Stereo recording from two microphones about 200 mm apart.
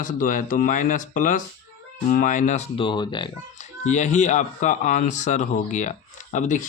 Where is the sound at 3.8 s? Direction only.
35° left (ahead or behind).